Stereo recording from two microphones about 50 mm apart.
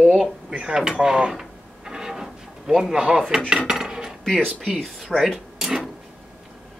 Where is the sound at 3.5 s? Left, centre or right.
Centre.